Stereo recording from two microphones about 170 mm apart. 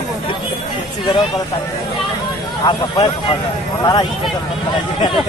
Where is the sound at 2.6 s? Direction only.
25° left (ahead or behind).